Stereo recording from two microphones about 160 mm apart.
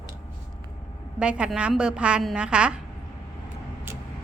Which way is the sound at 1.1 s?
5° right (ahead or behind).